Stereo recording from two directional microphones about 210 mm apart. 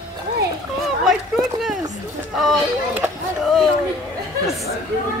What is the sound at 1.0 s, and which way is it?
Speech, centre (ahead or behind).